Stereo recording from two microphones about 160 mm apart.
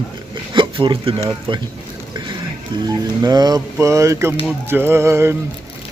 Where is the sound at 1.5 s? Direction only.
30° right (ahead or behind).